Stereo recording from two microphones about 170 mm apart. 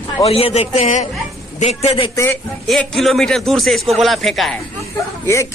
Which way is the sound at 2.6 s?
Centre (ahead or behind).